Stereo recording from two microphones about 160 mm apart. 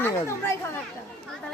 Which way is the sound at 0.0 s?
15° left (ahead or behind).